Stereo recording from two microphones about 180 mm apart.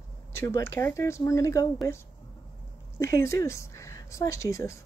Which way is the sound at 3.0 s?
15° left (ahead or behind).